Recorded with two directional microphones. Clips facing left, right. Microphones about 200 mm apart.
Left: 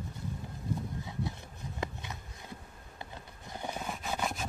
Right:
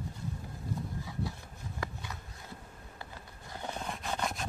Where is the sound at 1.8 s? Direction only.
20° left (ahead or behind).